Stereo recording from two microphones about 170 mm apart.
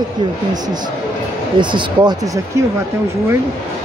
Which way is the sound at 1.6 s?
30° right (ahead or behind).